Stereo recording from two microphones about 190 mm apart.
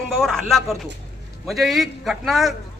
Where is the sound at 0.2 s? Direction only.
Centre (ahead or behind).